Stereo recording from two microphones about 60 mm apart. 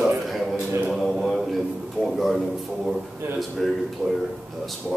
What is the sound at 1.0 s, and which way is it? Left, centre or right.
Speech, centre.